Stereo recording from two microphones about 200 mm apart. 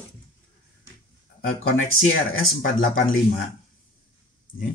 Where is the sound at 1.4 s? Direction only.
90° left.